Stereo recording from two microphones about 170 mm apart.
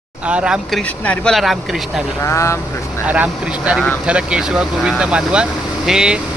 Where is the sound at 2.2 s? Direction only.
15° left (ahead or behind).